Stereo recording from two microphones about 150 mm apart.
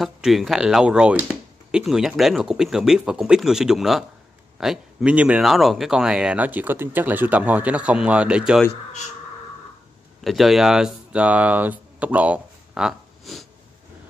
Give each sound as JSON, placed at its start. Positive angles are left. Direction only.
{"t": 0.0, "sound": "speech", "side_deg": 0}
{"t": 10.2, "sound": "speech", "side_deg": 0}